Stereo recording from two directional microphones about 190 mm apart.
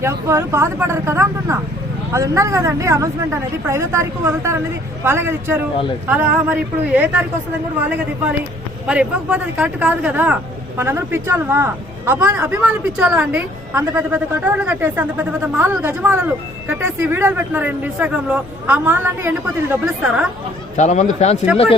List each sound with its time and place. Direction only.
0.0 s a man's voice: 15° right (ahead or behind)
20.7 s a man's voice: 40° left (ahead or behind)